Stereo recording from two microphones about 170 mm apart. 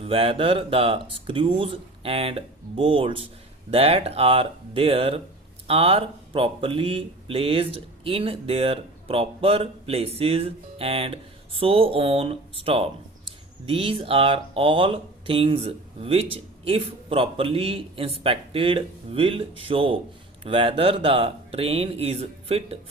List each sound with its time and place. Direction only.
0.0 s speech: 35° right (ahead or behind)